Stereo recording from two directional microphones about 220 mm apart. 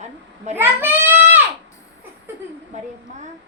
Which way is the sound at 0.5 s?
10° right (ahead or behind).